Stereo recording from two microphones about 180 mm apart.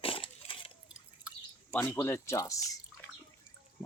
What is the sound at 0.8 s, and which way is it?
Drip, 5° right (ahead or behind).